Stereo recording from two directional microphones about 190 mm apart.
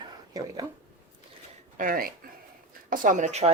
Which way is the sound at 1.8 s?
50° right (ahead or behind).